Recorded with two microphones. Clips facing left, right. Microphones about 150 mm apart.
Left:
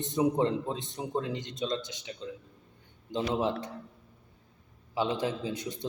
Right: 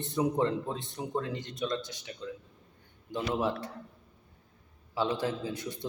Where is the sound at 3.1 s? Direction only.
20° left (ahead or behind).